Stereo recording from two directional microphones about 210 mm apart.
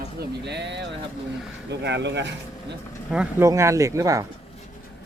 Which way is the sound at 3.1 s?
10° right (ahead or behind).